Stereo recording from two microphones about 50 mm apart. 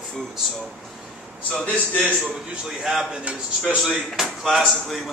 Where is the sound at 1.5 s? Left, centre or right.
Left.